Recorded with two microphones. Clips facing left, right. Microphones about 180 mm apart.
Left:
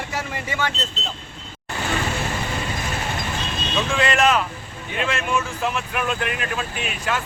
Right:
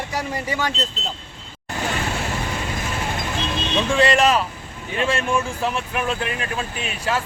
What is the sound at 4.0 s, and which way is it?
Speech, 35° right (ahead or behind).